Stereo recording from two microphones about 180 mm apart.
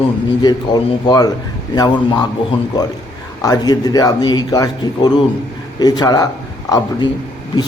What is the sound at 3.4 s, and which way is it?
A man's voice, 20° left (ahead or behind).